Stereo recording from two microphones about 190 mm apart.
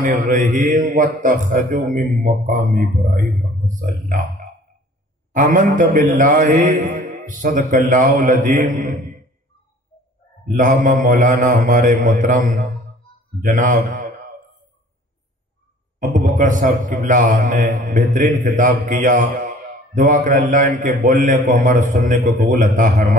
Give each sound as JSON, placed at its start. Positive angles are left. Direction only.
{"t": 0.1, "sound": "a man's voice", "side_deg": -40}
{"t": 5.3, "sound": "a man's voice", "side_deg": -45}
{"t": 10.5, "sound": "a man's voice", "side_deg": -40}
{"t": 16.1, "sound": "a man's voice", "side_deg": -40}